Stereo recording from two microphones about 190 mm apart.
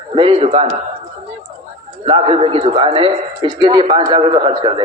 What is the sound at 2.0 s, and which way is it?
A man's voice, 30° right (ahead or behind).